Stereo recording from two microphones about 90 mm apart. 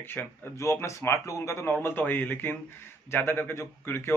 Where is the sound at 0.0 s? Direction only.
25° left (ahead or behind).